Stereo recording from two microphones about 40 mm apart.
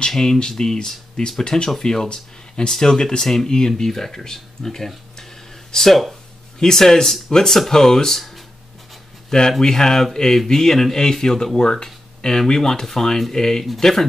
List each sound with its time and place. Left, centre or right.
0.1 s speech: centre
9.5 s speech: centre